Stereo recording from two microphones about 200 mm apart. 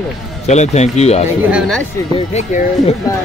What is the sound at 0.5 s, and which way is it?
Speech, 35° left (ahead or behind).